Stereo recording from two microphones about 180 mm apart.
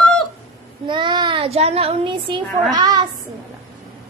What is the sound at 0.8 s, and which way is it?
A child's voice, 25° right (ahead or behind).